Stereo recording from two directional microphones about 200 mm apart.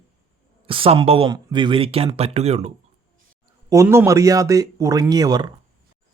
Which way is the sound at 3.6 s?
15° right (ahead or behind).